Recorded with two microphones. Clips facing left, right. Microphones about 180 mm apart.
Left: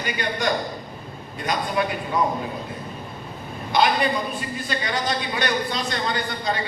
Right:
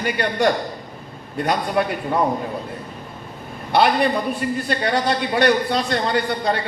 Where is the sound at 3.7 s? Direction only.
60° right (ahead or behind).